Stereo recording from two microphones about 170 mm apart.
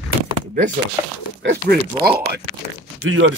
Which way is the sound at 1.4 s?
80° right.